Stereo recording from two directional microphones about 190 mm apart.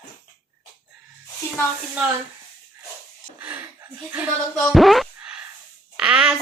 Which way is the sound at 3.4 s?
10° right (ahead or behind).